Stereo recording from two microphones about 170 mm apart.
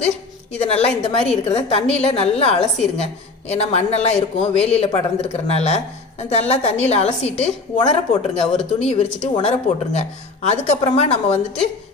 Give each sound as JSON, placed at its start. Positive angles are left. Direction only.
{"t": 0.6, "sound": "a man's voice", "side_deg": 35}